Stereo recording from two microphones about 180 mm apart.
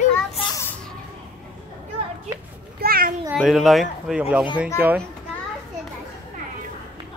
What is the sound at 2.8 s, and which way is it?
Speech, 55° right (ahead or behind).